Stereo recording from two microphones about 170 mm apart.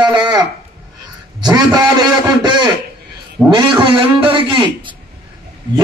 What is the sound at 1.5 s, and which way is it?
A man's voice, 25° right (ahead or behind).